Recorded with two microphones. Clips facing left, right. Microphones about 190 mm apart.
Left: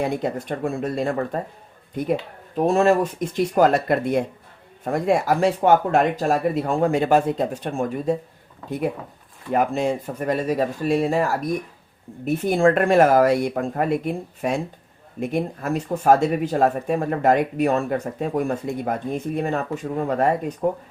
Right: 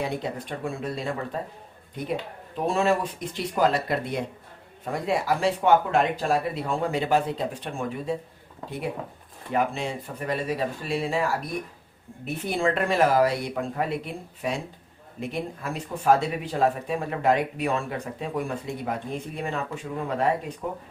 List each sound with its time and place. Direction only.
0.2 s speech: 50° left (ahead or behind)
2.6 s speech: 45° left (ahead or behind)
9.5 s speech: 45° left (ahead or behind)